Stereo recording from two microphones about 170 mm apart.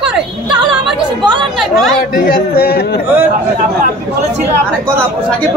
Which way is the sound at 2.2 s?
65° left (ahead or behind).